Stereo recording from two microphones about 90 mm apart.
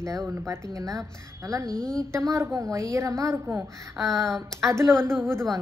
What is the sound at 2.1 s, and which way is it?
Speech, 35° right (ahead or behind).